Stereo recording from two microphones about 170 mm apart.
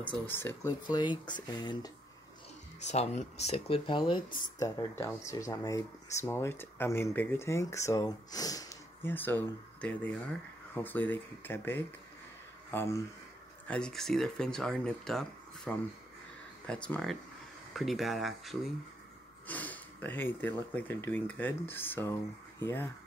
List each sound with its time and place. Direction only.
0.0 s speech: 10° left (ahead or behind)
2.8 s speech: 40° left (ahead or behind); by 13.0 s 15° left (ahead or behind)
13.7 s speech: 5° left (ahead or behind)